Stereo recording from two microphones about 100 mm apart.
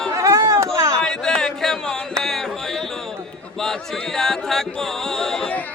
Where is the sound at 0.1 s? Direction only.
30° right (ahead or behind).